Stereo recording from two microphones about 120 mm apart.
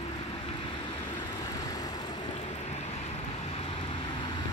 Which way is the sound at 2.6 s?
65° left (ahead or behind).